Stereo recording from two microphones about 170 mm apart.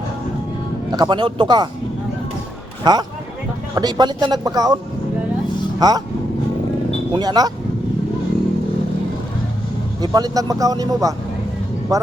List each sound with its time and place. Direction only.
0.9 s speech: 25° right (ahead or behind)
2.8 s speech: 25° right (ahead or behind)
5.8 s speech: 25° right (ahead or behind)
7.1 s speech: 25° right (ahead or behind)
10.0 s speech: 20° right (ahead or behind)